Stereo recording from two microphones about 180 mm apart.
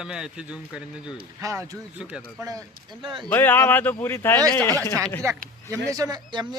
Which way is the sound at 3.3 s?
10° left (ahead or behind).